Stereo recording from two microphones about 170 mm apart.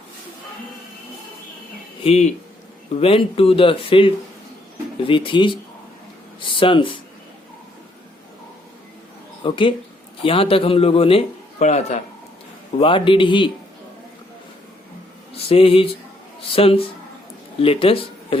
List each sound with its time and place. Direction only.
2.0 s a man's voice: 40° left (ahead or behind)
6.6 s a man's voice: 30° left (ahead or behind)
9.4 s a man's voice: 30° left (ahead or behind)
12.8 s a man's voice: 30° left (ahead or behind)
15.4 s speech: 35° left (ahead or behind)